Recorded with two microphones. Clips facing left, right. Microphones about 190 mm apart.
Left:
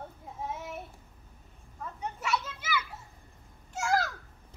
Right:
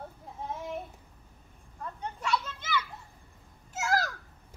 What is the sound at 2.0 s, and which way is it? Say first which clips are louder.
Children playing: right 1 dB; 10° left (ahead or behind).